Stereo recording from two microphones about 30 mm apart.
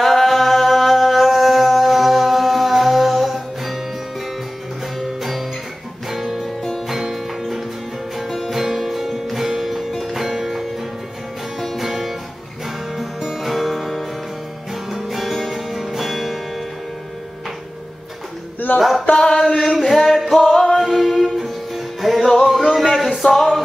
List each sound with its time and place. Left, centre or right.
0.0 s a capella: centre
5.0 s music: centre
11.7 s music: centre
13.2 s music: centre
18.8 s a sound: centre
19.1 s chant: left
19.9 s music: centre
20.8 s music: centre
22.5 s a sound: centre
22.8 s music: centre